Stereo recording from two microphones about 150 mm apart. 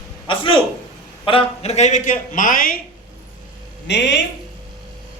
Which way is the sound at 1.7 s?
50° left (ahead or behind).